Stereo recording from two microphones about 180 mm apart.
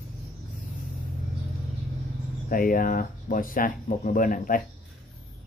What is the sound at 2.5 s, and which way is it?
Speech, 50° left (ahead or behind).